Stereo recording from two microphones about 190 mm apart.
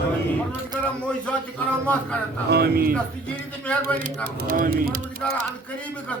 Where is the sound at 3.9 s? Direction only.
45° right (ahead or behind).